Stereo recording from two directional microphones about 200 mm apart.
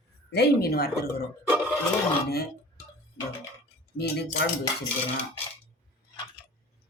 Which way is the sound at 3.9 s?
55° left (ahead or behind).